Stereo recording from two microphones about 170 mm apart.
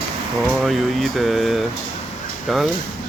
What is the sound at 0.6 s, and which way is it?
Speech, centre (ahead or behind).